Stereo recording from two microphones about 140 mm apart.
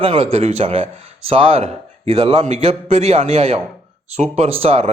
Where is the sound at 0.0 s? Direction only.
45° right (ahead or behind).